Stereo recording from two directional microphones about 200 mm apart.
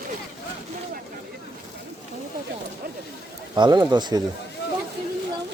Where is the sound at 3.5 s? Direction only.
20° right (ahead or behind).